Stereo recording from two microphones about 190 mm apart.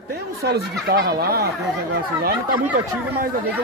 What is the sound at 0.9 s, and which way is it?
Speech, 55° right (ahead or behind).